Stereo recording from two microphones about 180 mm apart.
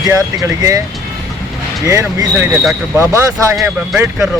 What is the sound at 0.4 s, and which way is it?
Speech, 20° right (ahead or behind).